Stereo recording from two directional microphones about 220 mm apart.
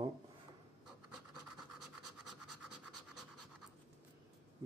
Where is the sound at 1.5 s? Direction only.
Centre (ahead or behind).